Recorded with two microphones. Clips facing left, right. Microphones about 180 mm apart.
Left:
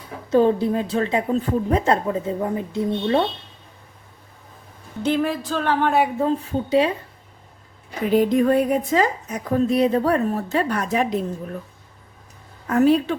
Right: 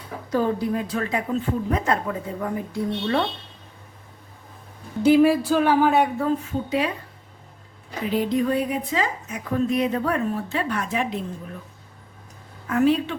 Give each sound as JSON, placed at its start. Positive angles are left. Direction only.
{"t": 0.3, "sound": "speech", "side_deg": 25}
{"t": 5.0, "sound": "music", "side_deg": -10}
{"t": 6.1, "sound": "speech", "side_deg": 30}
{"t": 8.1, "sound": "a woman's voice", "side_deg": 50}
{"t": 12.6, "sound": "a woman's voice", "side_deg": 40}